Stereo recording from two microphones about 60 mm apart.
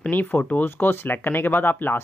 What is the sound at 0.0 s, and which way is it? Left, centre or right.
Speech, left.